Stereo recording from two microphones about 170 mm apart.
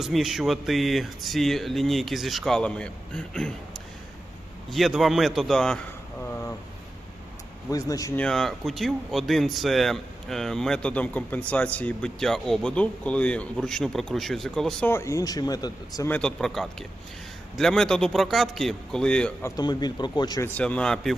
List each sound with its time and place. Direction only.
0.0 s speech: centre (ahead or behind)
4.7 s speech: centre (ahead or behind)
6.2 s vehicle: 15° left (ahead or behind)
7.7 s speech: 20° left (ahead or behind)
8.2 s speech: centre (ahead or behind); by 16.0 s 20° left (ahead or behind)
16.0 s speech: 5° left (ahead or behind); by 20.5 s 25° left (ahead or behind)
20.6 s speech: 5° left (ahead or behind)